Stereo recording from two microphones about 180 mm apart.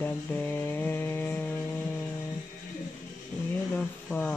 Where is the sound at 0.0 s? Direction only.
10° left (ahead or behind).